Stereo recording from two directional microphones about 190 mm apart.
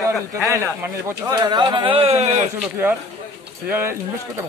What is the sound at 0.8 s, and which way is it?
Speech, 20° right (ahead or behind).